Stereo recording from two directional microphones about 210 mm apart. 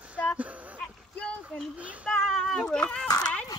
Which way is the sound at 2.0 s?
5° left (ahead or behind).